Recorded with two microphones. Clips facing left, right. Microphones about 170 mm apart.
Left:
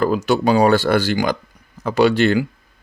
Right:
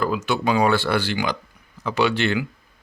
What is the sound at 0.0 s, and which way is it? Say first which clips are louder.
Speech: left 6 dB; 40° left (ahead or behind).